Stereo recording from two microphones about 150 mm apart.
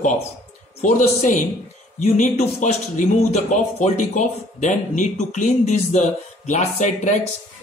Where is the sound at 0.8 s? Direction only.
55° left (ahead or behind).